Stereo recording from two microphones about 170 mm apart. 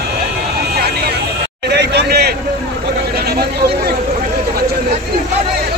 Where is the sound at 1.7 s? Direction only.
80° right.